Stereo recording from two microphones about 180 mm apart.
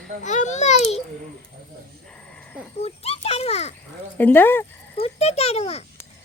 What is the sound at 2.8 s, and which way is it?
Children playing, 35° left (ahead or behind).